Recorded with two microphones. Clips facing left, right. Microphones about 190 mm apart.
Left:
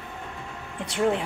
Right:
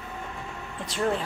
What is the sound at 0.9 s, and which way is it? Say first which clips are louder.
Speech: left 3 dB; 15° left (ahead or behind).